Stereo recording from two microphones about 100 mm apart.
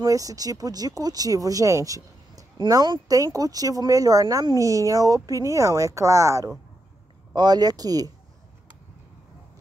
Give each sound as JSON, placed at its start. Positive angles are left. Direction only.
{"t": 0.0, "sound": "speech", "side_deg": -35}
{"t": 7.3, "sound": "speech", "side_deg": -45}